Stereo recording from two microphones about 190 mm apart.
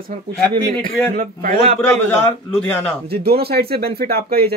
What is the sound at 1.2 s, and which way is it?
Speech, 45° right (ahead or behind).